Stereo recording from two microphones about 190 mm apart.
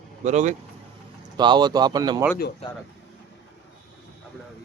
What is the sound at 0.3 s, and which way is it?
Speech, 40° right (ahead or behind).